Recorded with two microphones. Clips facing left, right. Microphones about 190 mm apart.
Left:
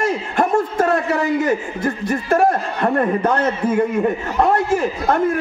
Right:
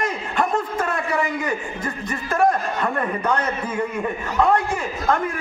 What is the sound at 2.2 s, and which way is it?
A man's voice, 40° left (ahead or behind).